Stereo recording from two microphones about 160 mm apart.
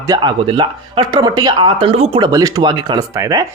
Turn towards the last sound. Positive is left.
turn(degrees=-20)  # may be behind; listen again after turning